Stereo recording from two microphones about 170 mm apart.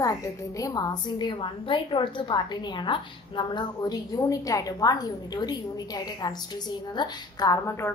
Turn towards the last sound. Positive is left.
turn(degrees=20)  # may be behind; listen again after turning